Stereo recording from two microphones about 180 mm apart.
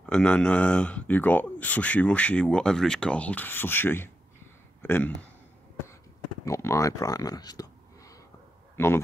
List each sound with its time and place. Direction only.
0.0 s speech: 5° left (ahead or behind)
6.4 s a man's voice: 15° left (ahead or behind)